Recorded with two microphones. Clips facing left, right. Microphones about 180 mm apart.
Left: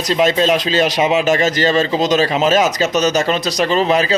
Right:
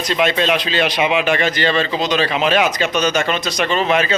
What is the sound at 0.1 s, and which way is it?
A man's voice, 35° left (ahead or behind).